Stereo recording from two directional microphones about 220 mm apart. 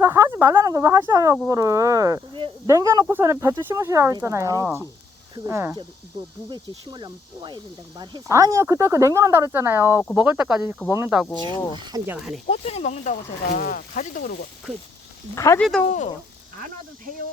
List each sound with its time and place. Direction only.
0.0 s speech: 10° right (ahead or behind)
11.7 s speech: 20° right (ahead or behind)
12.1 s speech: centre (ahead or behind)
12.5 s speech: 30° left (ahead or behind)
15.4 s speech: 15° left (ahead or behind)
15.9 s speech: 30° left (ahead or behind)